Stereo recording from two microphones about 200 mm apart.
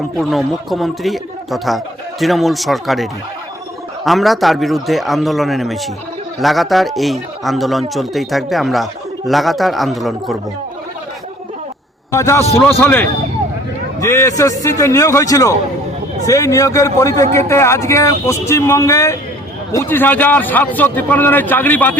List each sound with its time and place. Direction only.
0.2 s speech: centre (ahead or behind)
12.1 s a man's voice: 15° left (ahead or behind)